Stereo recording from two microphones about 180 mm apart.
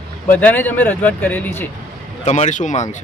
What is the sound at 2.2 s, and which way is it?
Speech, 40° left (ahead or behind).